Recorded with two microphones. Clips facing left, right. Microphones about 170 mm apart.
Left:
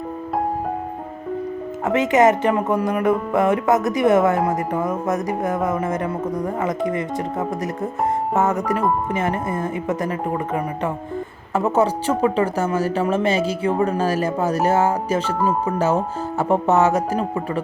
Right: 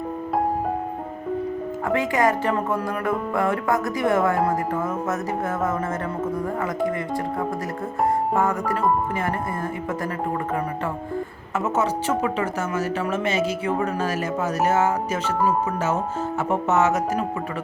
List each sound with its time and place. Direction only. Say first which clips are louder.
1.8 s music: left 6 dB; 20° left (ahead or behind)
11.5 s speech: left 5 dB; 30° left (ahead or behind)